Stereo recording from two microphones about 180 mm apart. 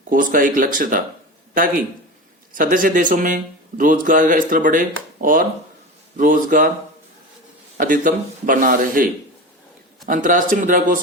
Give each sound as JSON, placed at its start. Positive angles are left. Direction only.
{"t": 0.1, "sound": "speech", "side_deg": -50}
{"t": 7.8, "sound": "speech", "side_deg": -50}
{"t": 10.1, "sound": "speech", "side_deg": -45}